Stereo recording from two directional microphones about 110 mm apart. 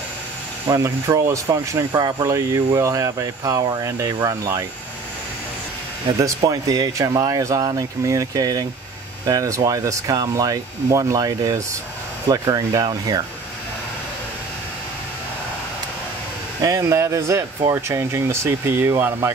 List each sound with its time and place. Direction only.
0.7 s speech: 30° right (ahead or behind)
1.9 s speech: 40° right (ahead or behind)
2.2 s speech: 30° right (ahead or behind)
6.1 s speech: 30° right (ahead or behind)
16.6 s speech: 30° right (ahead or behind)